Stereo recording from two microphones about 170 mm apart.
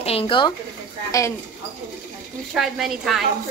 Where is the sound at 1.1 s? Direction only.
20° left (ahead or behind).